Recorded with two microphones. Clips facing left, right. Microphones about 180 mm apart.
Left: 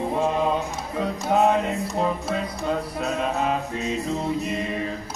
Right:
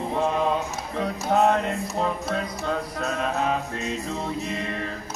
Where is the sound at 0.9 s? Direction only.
10° left (ahead or behind).